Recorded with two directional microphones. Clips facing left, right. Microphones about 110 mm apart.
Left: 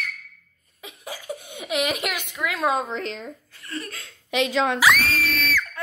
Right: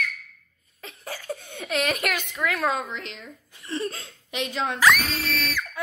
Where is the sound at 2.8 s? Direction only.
40° left (ahead or behind).